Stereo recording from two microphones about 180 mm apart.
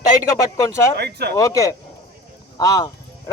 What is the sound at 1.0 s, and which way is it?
Speech, 65° right (ahead or behind).